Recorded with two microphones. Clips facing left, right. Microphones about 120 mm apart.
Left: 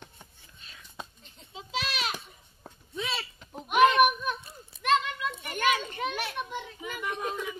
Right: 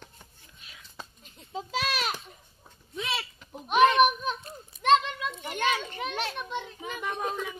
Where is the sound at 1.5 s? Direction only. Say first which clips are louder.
Right 4 dB; 45° right (ahead or behind).